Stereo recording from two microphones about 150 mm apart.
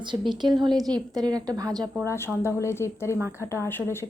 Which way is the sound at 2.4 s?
15° left (ahead or behind).